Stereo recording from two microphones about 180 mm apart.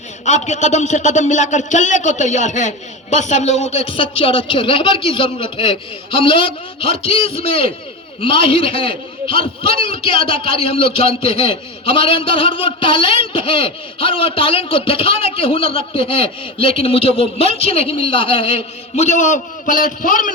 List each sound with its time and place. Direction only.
0.3 s a man's voice: 40° left (ahead or behind)